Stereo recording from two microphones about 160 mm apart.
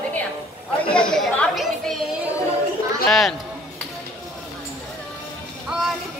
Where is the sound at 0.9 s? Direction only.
5° left (ahead or behind).